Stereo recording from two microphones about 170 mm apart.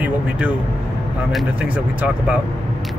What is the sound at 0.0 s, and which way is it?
Speech, 10° right (ahead or behind).